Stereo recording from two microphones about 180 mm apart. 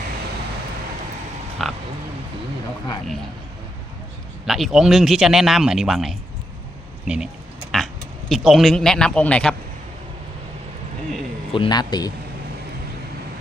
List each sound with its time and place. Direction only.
1.6 s a sound: centre (ahead or behind)
4.4 s speech: centre (ahead or behind)
8.3 s speech: centre (ahead or behind)
11.5 s speech: 25° left (ahead or behind)